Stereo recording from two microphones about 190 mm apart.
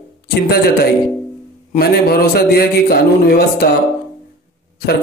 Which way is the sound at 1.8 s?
55° left (ahead or behind).